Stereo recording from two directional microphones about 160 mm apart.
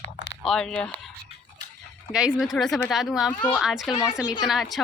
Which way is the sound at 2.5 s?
Centre (ahead or behind).